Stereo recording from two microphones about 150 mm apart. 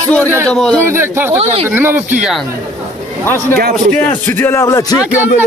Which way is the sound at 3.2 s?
15° left (ahead or behind).